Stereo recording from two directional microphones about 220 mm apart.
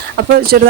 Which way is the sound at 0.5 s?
45° right (ahead or behind).